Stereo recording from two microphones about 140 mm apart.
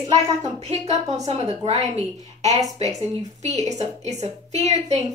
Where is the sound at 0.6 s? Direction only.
50° right (ahead or behind).